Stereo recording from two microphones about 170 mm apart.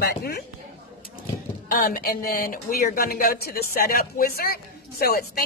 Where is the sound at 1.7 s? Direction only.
60° left (ahead or behind).